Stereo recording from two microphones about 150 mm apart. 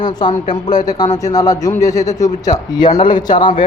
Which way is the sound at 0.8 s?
25° left (ahead or behind).